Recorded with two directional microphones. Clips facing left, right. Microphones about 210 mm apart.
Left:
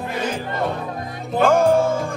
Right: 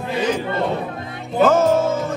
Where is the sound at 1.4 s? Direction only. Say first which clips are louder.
Right 1 dB; 15° left (ahead or behind).